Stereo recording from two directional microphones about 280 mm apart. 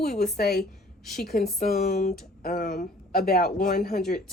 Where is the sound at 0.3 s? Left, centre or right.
Left.